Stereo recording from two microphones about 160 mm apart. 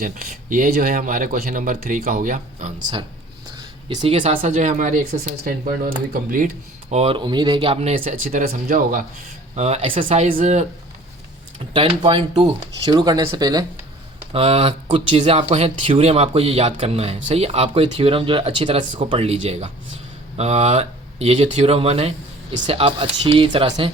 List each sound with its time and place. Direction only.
0.0 s speech: 60° right (ahead or behind)
3.8 s speech: 30° right (ahead or behind)
4.2 s speech: 50° right (ahead or behind)
6.9 s speech: 40° right (ahead or behind)
7.2 s speech: 30° right (ahead or behind); by 9.0 s 60° right (ahead or behind)
9.6 s speech: 40° right (ahead or behind)
11.7 s speech: 35° right (ahead or behind)
14.3 s speech: 40° right (ahead or behind)